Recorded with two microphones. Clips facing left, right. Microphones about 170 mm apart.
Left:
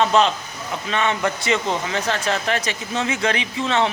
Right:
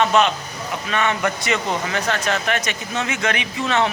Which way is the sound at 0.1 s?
30° left (ahead or behind).